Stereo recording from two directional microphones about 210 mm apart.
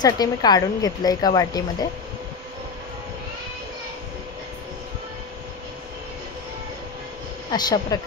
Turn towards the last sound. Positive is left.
turn(degrees=20)  # may be behind; listen again after turning